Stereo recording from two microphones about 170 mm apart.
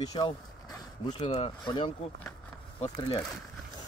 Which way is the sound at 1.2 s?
30° left (ahead or behind).